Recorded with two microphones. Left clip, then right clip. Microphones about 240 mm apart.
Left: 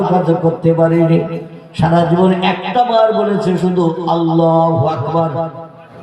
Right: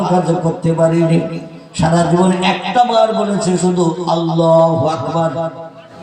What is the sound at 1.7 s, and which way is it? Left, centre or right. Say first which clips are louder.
A man's voice: left 1 dB; left.